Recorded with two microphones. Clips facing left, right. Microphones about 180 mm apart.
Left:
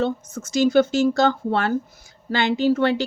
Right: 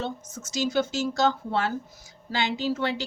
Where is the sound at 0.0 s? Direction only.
55° left (ahead or behind).